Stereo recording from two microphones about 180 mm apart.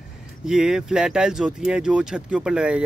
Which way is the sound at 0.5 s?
5° right (ahead or behind).